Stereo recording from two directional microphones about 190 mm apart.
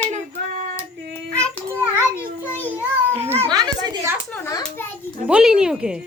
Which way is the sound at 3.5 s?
20° right (ahead or behind).